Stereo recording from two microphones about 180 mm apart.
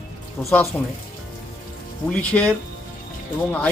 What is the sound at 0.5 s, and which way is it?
Speech, 10° left (ahead or behind).